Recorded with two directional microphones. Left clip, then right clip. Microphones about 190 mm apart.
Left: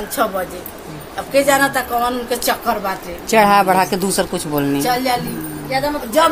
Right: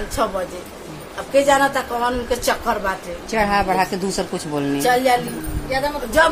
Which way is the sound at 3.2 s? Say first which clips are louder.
Left 7 dB; 30° left (ahead or behind).